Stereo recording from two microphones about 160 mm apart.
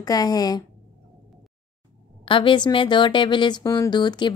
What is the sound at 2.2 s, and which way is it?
Speech, 30° left (ahead or behind).